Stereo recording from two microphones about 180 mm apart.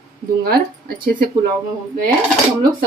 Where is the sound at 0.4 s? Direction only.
60° right (ahead or behind).